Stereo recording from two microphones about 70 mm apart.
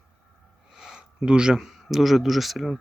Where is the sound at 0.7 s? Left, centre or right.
Centre.